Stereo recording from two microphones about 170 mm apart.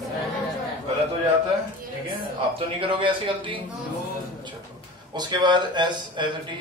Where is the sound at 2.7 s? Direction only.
30° right (ahead or behind).